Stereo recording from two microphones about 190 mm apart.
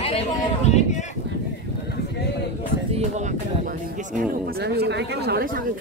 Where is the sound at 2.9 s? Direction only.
35° right (ahead or behind).